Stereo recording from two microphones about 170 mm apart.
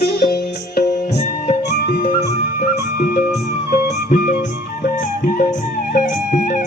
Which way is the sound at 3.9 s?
55° left (ahead or behind).